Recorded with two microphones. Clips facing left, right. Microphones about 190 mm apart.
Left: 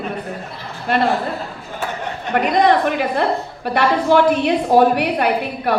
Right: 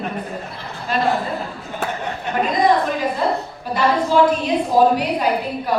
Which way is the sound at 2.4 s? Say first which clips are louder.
Left 2 dB; 70° left (ahead or behind).